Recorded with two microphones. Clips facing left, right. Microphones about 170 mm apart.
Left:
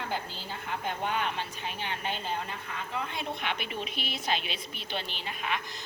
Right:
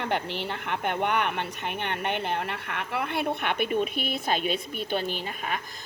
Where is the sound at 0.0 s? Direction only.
70° right (ahead or behind).